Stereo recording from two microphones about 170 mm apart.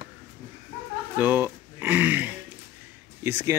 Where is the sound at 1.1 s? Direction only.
10° right (ahead or behind).